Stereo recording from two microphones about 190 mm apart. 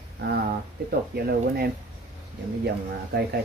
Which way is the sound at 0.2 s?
60° right (ahead or behind).